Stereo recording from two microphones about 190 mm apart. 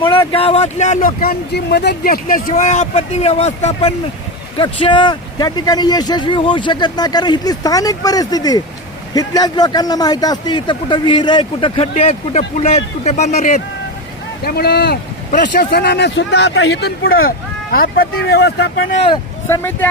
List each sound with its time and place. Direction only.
0.3 s speech: 30° left (ahead or behind)
1.2 s a man's voice: 55° left (ahead or behind); by 13.6 s 35° left (ahead or behind)
14.4 s speech: 55° left (ahead or behind)
18.9 s a man's voice: 30° left (ahead or behind)
19.5 s speech: 10° left (ahead or behind)